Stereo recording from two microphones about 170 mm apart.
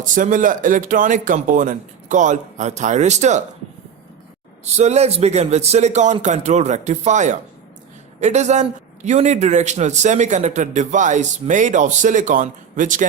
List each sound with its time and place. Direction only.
0.1 s a man's voice: 50° right (ahead or behind)
4.6 s a man's voice: 40° right (ahead or behind)